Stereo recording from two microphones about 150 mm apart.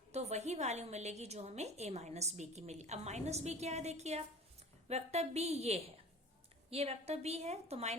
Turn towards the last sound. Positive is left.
turn(degrees=-45)  # may be behind; listen again after turning